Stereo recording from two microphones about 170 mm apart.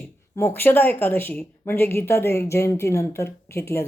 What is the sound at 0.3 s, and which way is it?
Speech, 15° left (ahead or behind).